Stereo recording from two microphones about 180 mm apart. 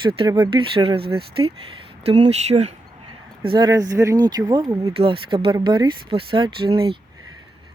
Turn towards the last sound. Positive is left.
turn(degrees=-30)  # may be behind; listen again after turning